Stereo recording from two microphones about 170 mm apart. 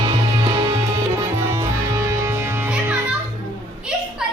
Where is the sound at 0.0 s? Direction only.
25° right (ahead or behind); by 3.2 s 5° right (ahead or behind).